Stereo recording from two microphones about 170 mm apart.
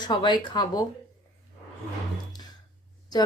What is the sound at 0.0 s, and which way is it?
Speech, 25° left (ahead or behind).